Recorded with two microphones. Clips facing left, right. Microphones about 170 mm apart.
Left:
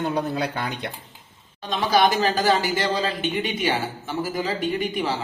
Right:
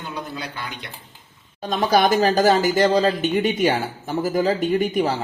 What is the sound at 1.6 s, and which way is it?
Speech, 45° right (ahead or behind).